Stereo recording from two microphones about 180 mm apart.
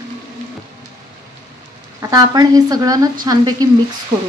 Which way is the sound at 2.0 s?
20° right (ahead or behind).